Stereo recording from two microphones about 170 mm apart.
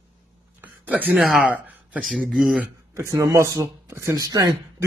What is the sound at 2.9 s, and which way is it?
Speech, 15° right (ahead or behind).